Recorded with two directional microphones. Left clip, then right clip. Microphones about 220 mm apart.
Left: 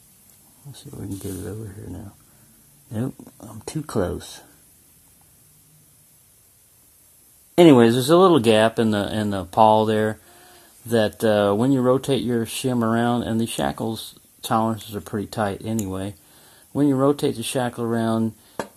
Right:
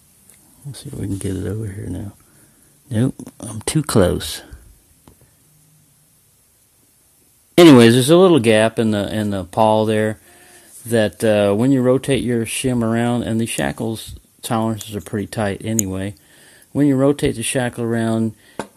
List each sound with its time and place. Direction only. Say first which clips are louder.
0.7 s speech: right 7 dB; 35° right (ahead or behind)
7.7 s speech: right 5 dB; 35° right (ahead or behind)
16.3 s a sound: right 4 dB; 60° right (ahead or behind)
16.7 s speech: right 3 dB; 25° right (ahead or behind)